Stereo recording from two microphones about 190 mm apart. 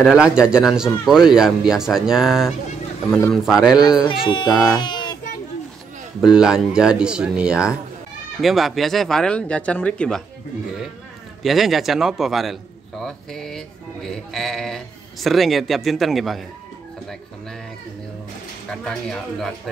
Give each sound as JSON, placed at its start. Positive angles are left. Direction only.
{"t": 0.0, "sound": "a man's voice", "side_deg": -5}
{"t": 3.1, "sound": "speech", "side_deg": 10}
{"t": 3.4, "sound": "a man's voice", "side_deg": -5}
{"t": 4.1, "sound": "speech", "side_deg": 25}
{"t": 4.6, "sound": "child singing", "side_deg": 25}
{"t": 6.2, "sound": "a man's voice", "side_deg": -5}
{"t": 11.4, "sound": "a man's voice", "side_deg": 0}
{"t": 18.7, "sound": "a man's voice", "side_deg": 5}